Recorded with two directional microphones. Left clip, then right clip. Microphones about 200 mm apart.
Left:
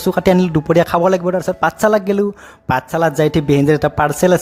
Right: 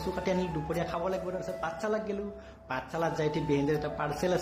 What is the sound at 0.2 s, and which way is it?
Speech, 55° left (ahead or behind).